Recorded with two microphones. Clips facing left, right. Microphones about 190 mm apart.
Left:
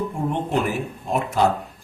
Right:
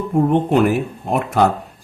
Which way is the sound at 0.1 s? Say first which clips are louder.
Right 8 dB; 65° right (ahead or behind).